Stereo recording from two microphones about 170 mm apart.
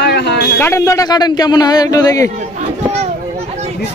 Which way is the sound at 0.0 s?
80° left.